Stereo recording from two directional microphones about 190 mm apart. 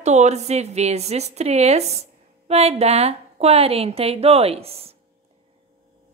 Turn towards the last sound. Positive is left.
turn(degrees=-30)  # may be behind; listen again after turning